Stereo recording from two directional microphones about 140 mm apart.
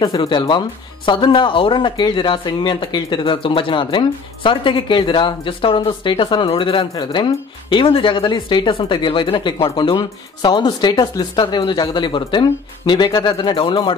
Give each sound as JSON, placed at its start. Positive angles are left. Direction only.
{"t": 0.0, "sound": "speech", "side_deg": 30}